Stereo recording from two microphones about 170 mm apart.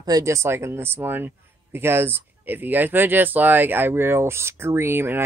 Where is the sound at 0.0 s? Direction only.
20° right (ahead or behind).